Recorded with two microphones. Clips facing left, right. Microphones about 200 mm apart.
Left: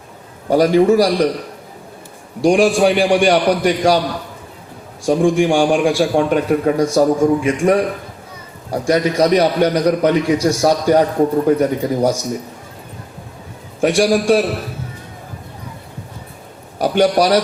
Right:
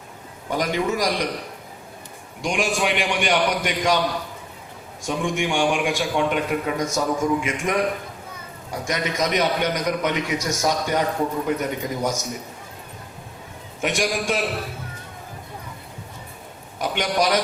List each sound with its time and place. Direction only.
0.5 s a man's voice: 35° left (ahead or behind)
2.4 s a man's voice: 35° left (ahead or behind)
5.0 s a man's voice: 35° left (ahead or behind)
13.8 s a man's voice: 35° left (ahead or behind)
16.7 s a man's voice: 35° left (ahead or behind)